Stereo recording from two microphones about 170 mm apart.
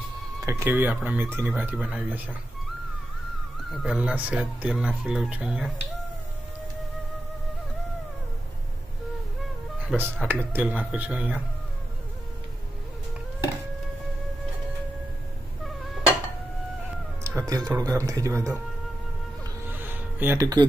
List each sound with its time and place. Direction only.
0.4 s speech: 15° right (ahead or behind)
3.7 s speech: centre (ahead or behind)
9.9 s speech: 5° right (ahead or behind)
17.2 s a sound: 15° right (ahead or behind)
17.7 s speech: 20° right (ahead or behind)
19.8 s music: 10° right (ahead or behind)